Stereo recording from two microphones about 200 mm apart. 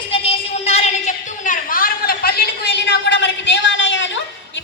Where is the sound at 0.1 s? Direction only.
30° left (ahead or behind).